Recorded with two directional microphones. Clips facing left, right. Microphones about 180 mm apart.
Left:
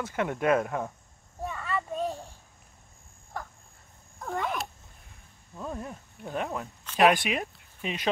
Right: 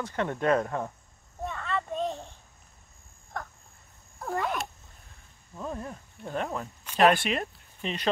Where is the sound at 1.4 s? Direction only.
5° left (ahead or behind).